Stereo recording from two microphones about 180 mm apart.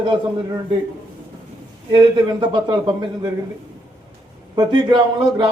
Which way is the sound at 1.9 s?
25° right (ahead or behind).